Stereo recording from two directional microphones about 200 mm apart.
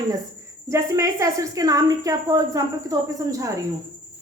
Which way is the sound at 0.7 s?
15° right (ahead or behind).